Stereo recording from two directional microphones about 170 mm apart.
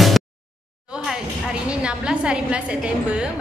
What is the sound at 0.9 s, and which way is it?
A woman's voice, 5° right (ahead or behind).